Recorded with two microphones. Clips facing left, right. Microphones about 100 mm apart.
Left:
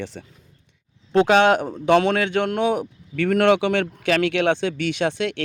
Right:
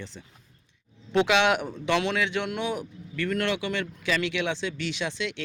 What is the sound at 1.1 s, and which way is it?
Speech, 40° left (ahead or behind).